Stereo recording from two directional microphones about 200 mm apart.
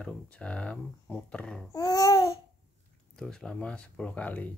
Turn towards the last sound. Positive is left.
turn(degrees=5)  # may be behind; listen again after turning